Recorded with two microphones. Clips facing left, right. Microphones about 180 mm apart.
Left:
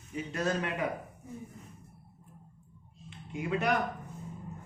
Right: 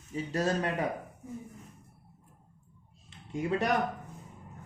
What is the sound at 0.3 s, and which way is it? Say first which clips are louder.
Speech: right 2 dB; 35° right (ahead or behind).